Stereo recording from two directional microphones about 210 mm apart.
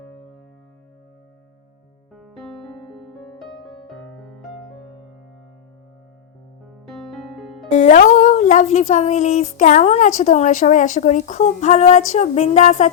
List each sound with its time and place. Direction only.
2.1 s music: centre (ahead or behind)
6.8 s music: centre (ahead or behind)
7.7 s speech: 35° left (ahead or behind)